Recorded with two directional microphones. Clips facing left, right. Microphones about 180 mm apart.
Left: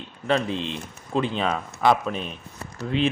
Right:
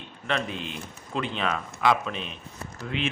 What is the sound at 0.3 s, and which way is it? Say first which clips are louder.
Speech: left 6 dB; 30° left (ahead or behind).